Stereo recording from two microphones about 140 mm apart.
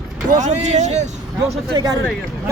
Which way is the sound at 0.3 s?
60° right (ahead or behind).